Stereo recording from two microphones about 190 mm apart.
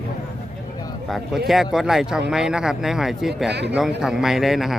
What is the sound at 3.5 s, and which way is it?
Speech, 65° right (ahead or behind).